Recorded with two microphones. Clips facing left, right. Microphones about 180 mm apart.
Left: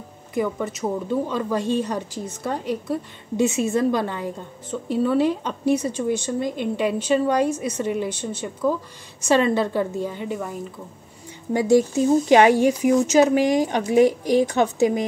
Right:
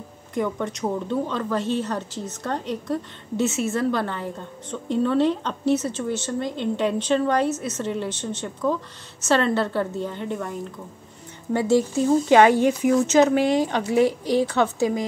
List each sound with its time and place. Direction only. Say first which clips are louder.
0.3 s a woman's voice: left 1 dB; 5° left (ahead or behind)
11.5 s a woman's voice: left 2 dB; 15° left (ahead or behind)